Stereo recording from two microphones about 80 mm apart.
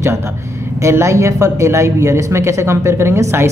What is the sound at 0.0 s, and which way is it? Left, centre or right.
A woman's voice, right.